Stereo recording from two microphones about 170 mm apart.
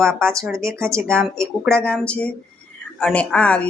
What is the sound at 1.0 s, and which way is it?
A woman's voice, 5° left (ahead or behind).